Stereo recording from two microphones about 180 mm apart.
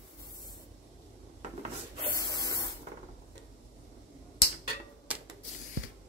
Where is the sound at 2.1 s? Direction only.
20° left (ahead or behind).